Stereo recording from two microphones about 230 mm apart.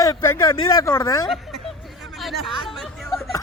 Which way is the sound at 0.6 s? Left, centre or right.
Centre.